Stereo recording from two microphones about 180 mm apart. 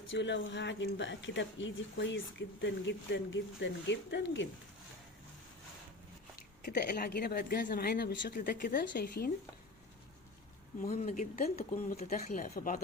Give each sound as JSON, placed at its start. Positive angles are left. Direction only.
{"t": 0.1, "sound": "speech", "side_deg": 80}
{"t": 6.6, "sound": "a woman's voice", "side_deg": 55}
{"t": 10.8, "sound": "speech", "side_deg": 40}
{"t": 12.1, "sound": "speech", "side_deg": 50}